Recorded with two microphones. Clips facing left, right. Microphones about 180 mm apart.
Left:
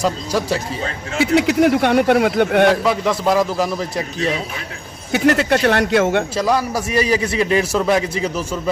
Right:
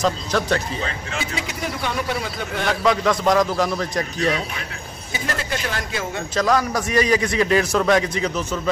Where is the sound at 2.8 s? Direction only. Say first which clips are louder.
Left 1 dB; 5° left (ahead or behind).